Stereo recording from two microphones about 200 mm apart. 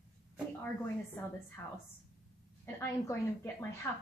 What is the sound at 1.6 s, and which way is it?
Speech, 15° left (ahead or behind).